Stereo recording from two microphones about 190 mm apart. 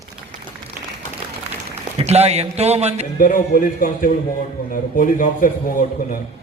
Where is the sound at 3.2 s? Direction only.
45° left (ahead or behind).